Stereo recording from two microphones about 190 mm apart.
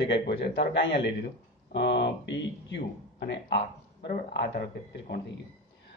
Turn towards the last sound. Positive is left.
turn(degrees=55)  # may be behind; listen again after turning